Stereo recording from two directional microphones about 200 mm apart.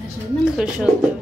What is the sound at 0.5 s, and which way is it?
Speech, 5° right (ahead or behind).